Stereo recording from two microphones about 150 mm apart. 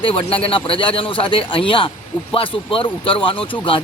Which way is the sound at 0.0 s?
40° left (ahead or behind).